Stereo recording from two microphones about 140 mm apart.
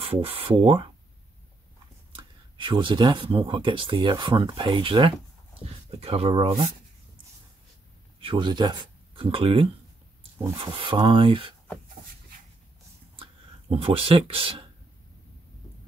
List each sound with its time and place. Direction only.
0.0 s speech: 40° right (ahead or behind)
2.1 s speech: 35° right (ahead or behind)
8.2 s speech: 35° right (ahead or behind)
13.7 s speech: 40° right (ahead or behind)